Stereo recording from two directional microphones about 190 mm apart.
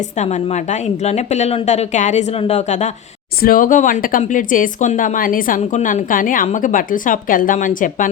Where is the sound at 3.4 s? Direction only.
50° left (ahead or behind).